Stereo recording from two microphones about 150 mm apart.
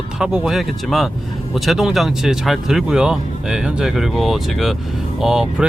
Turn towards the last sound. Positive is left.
turn(degrees=-5)  # may be behind; listen again after turning